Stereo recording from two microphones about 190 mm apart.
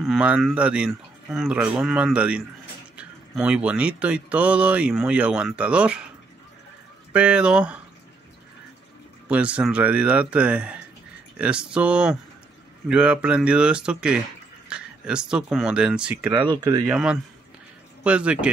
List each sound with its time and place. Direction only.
0.0 s speech: 5° right (ahead or behind)
7.1 s speech: 5° right (ahead or behind)
9.3 s speech: 5° right (ahead or behind)
16.3 s speech: 25° right (ahead or behind)
16.8 s speech: 5° right (ahead or behind)